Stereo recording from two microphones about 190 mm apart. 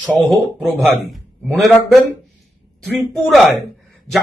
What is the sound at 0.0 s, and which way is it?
Speech, 5° left (ahead or behind).